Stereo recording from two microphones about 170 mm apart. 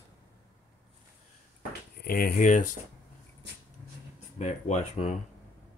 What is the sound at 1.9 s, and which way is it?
Speech, 65° left (ahead or behind).